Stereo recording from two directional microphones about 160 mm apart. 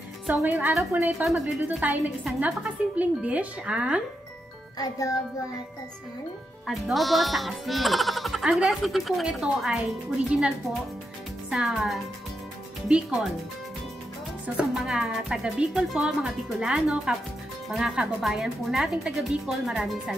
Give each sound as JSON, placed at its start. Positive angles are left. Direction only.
{"t": 0.3, "sound": "a woman's voice", "side_deg": -10}
{"t": 4.7, "sound": "a child's voice", "side_deg": 20}
{"t": 6.7, "sound": "speech", "side_deg": 0}
{"t": 14.4, "sound": "speech", "side_deg": -5}